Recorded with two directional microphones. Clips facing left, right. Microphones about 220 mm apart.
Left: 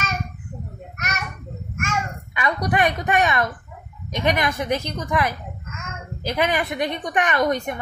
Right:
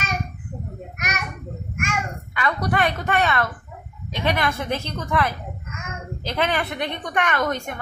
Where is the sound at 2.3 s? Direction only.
15° left (ahead or behind).